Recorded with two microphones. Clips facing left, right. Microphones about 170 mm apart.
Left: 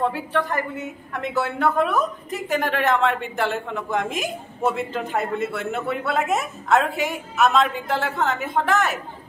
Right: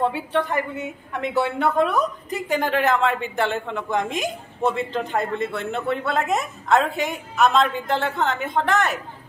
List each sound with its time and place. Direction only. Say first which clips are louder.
0.1 s a woman's voice: right 1 dB; 25° right (ahead or behind)
1.6 s a woman's voice: left 1 dB; 5° left (ahead or behind)